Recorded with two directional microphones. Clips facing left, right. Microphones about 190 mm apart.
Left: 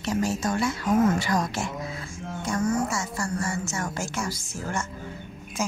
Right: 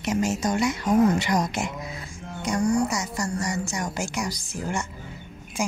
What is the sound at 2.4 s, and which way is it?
Music, 15° right (ahead or behind).